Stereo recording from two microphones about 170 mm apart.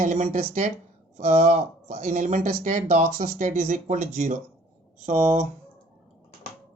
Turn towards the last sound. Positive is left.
turn(degrees=-40)  # may be behind; listen again after turning